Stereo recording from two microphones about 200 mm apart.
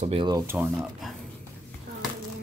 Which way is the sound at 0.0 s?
25° right (ahead or behind).